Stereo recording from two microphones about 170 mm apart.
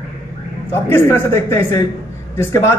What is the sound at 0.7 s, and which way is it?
A man's voice, 15° left (ahead or behind).